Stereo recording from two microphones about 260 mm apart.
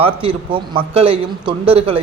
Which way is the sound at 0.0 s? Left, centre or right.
Right.